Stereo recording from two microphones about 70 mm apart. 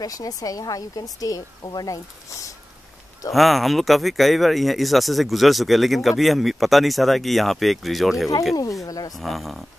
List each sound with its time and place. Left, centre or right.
0.0 s speech: left
2.2 s speech: left
3.3 s speech: centre
8.8 s wild animals: left
9.1 s speech: centre